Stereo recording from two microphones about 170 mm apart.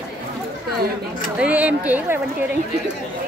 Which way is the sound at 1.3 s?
5° right (ahead or behind).